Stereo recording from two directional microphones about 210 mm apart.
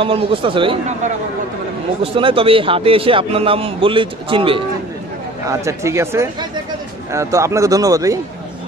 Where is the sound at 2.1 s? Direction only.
25° right (ahead or behind).